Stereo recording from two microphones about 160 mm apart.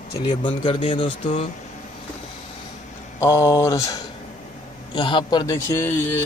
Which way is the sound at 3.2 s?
20° left (ahead or behind).